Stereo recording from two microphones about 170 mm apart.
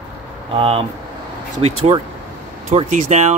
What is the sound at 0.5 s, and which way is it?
Speech, 35° right (ahead or behind).